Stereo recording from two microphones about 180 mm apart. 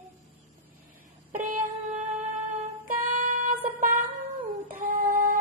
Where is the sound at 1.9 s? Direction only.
35° right (ahead or behind).